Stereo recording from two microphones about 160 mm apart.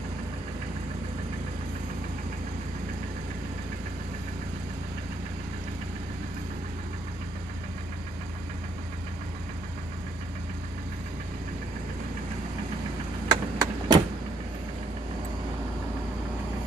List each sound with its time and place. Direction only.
13.3 s vehicle: 25° right (ahead or behind)